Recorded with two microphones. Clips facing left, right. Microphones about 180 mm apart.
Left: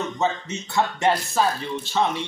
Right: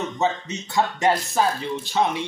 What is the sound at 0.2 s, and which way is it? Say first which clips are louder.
Speech: right 2 dB; 15° right (ahead or behind).